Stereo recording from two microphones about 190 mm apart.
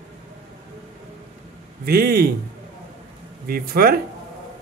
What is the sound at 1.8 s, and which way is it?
Speech, 55° right (ahead or behind).